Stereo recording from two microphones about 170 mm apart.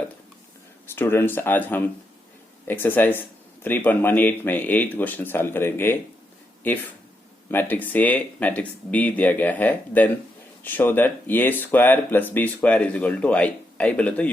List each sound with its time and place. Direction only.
0.9 s speech: 15° left (ahead or behind)
7.5 s speech: 10° left (ahead or behind)